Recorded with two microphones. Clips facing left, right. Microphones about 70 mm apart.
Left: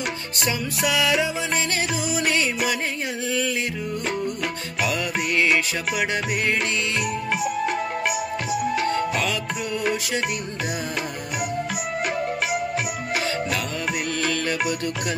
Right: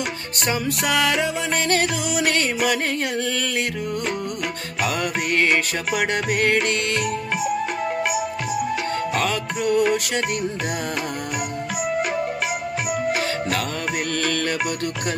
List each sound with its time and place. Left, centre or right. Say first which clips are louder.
0.5 s music: right 2 dB; right
4.8 s music: right 2 dB; right
9.1 s music: right 2 dB; right
14.1 s music: right 3 dB; right